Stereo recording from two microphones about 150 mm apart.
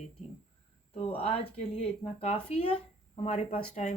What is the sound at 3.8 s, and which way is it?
Speech, 55° left (ahead or behind).